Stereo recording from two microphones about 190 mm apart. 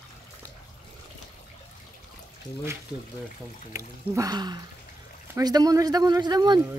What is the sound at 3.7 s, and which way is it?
Speech, 15° right (ahead or behind).